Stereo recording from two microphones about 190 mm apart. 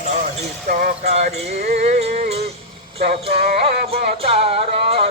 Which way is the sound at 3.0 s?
55° right (ahead or behind).